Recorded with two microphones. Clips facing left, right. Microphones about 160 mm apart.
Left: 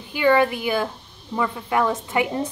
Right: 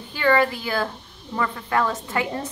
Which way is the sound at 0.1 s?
15° left (ahead or behind).